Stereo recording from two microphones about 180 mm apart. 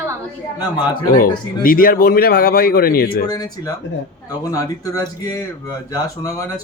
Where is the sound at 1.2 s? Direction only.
50° left (ahead or behind).